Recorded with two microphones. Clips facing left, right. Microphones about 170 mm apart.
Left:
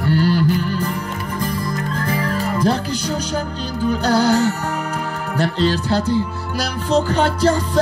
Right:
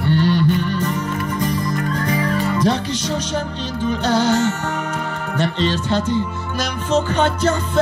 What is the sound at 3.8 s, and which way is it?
Music, 35° left (ahead or behind).